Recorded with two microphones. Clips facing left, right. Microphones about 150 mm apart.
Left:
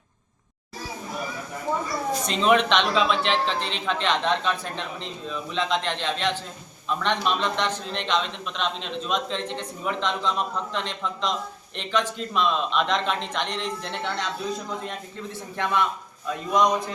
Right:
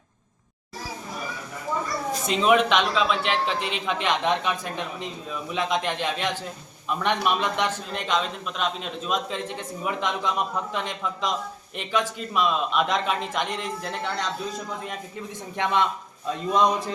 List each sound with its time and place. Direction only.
1.7 s a sound: 25° left (ahead or behind)
2.2 s a man's voice: 10° right (ahead or behind)
15.5 s a man's voice: 20° right (ahead or behind)